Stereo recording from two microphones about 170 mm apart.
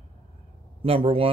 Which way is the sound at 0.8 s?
35° right (ahead or behind).